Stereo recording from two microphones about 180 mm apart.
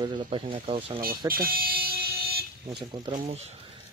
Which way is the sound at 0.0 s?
25° right (ahead or behind).